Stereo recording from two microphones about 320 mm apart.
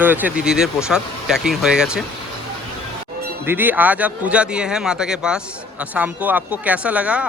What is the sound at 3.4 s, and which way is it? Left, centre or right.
Speech, centre.